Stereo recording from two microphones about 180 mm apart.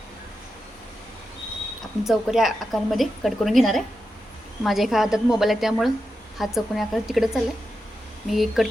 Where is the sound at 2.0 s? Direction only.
Centre (ahead or behind).